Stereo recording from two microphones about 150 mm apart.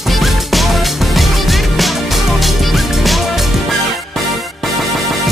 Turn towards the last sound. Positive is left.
turn(degrees=0)  # may be behind; listen again after turning